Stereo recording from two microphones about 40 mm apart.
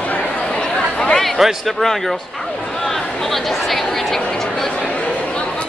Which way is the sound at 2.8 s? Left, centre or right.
Centre.